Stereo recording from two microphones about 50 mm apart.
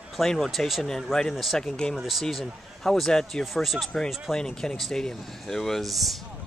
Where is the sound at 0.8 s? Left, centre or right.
Centre.